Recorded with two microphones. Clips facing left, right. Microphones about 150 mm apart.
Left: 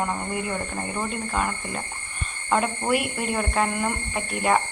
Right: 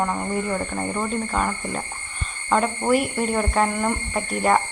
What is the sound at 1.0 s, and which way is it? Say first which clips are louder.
A woman's voice: right 2 dB; centre (ahead or behind).